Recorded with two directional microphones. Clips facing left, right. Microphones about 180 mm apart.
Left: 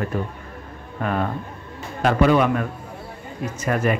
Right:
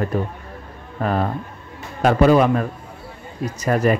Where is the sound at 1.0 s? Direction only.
35° right (ahead or behind).